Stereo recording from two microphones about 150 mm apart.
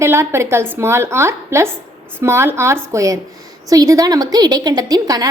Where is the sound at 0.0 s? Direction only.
15° right (ahead or behind).